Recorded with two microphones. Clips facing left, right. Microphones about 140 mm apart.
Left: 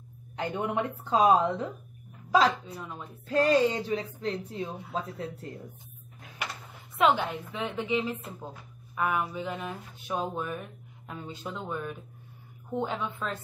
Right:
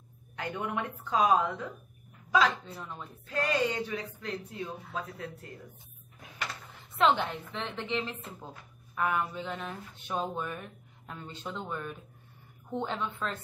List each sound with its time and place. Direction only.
0.4 s a woman's voice: 30° left (ahead or behind)
2.6 s a woman's voice: 5° left (ahead or behind)
3.3 s speech: 30° left (ahead or behind)
7.0 s a woman's voice: 10° left (ahead or behind)